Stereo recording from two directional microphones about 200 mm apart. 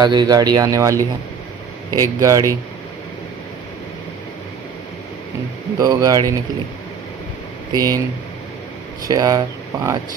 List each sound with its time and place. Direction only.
0.0 s a man's voice: 20° right (ahead or behind)
5.8 s a man's voice: 20° right (ahead or behind)
7.7 s a man's voice: 15° right (ahead or behind)
9.0 s speech: 20° right (ahead or behind)